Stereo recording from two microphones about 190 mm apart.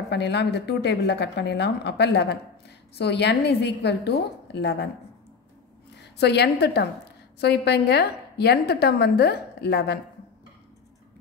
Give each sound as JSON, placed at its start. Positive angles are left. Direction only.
{"t": 0.1, "sound": "a woman's voice", "side_deg": 65}
{"t": 6.1, "sound": "a woman's voice", "side_deg": 60}